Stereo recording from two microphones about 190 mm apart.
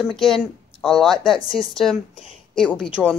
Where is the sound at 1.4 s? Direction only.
25° left (ahead or behind).